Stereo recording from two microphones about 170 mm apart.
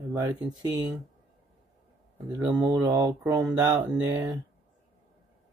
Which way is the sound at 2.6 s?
25° right (ahead or behind).